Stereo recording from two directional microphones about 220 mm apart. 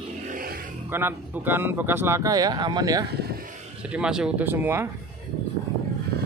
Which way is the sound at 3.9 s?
5° right (ahead or behind).